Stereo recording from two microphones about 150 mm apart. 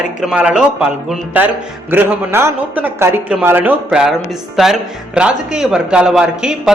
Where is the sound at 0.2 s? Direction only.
5° right (ahead or behind).